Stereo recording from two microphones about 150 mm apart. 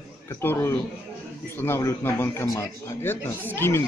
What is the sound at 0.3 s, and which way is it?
A man's voice, 15° left (ahead or behind).